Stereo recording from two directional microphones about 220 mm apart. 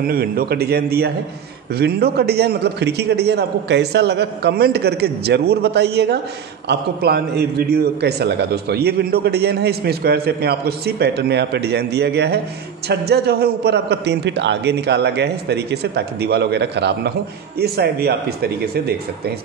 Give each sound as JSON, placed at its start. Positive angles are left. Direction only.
{"t": 0.0, "sound": "a man's voice", "side_deg": -45}